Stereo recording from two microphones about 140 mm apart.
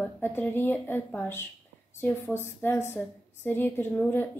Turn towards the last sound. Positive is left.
turn(degrees=15)  # may be behind; listen again after turning